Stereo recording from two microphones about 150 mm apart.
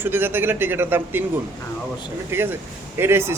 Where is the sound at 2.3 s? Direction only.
15° right (ahead or behind).